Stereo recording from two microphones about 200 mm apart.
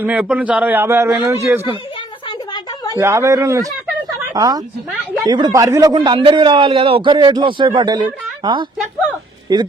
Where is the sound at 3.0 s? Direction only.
15° right (ahead or behind).